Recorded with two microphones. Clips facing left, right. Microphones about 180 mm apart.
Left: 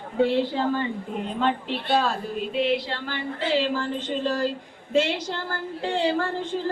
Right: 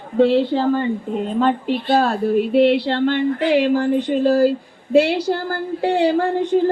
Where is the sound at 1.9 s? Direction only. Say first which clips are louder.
Right 8 dB; 60° right (ahead or behind).